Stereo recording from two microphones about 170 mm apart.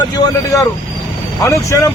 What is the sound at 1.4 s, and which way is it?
Speech, 15° left (ahead or behind).